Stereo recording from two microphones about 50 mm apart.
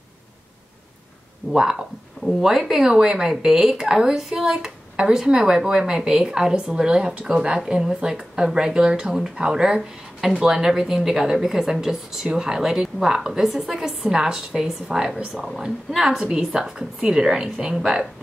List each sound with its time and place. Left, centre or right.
1.5 s speech: centre
16.3 s speech: centre